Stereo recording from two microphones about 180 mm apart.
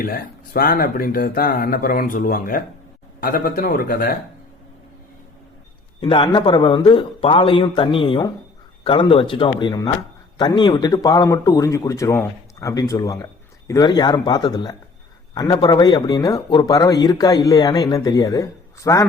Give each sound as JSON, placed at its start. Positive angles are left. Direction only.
{"t": 0.0, "sound": "speech", "side_deg": 55}
{"t": 6.0, "sound": "speech", "side_deg": 25}